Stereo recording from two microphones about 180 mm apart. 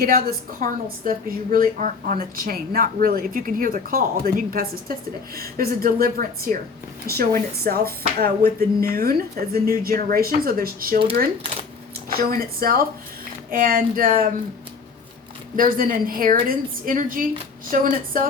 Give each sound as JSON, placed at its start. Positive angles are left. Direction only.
{"t": 0.0, "sound": "a woman's voice", "side_deg": -55}
{"t": 12.0, "sound": "a woman's voice", "side_deg": -55}
{"t": 15.5, "sound": "a woman's voice", "side_deg": -50}